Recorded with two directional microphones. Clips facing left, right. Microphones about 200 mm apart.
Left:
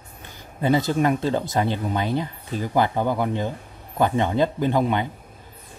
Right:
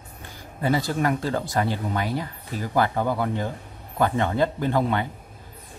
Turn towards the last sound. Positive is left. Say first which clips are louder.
# left 2 dB
turn(degrees=15)  # may be behind; listen again after turning